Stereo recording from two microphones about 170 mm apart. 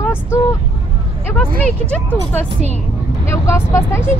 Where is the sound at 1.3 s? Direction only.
10° left (ahead or behind).